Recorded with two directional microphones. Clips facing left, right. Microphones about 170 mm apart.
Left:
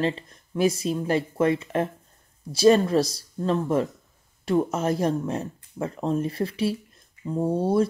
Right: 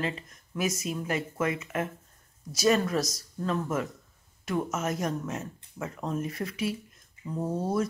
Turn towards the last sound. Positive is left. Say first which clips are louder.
# left 7 dB
turn(degrees=30)  # may be behind; listen again after turning